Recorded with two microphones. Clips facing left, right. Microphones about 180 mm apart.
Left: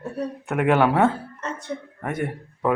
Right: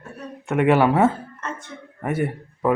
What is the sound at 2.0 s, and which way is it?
Speech, 5° right (ahead or behind).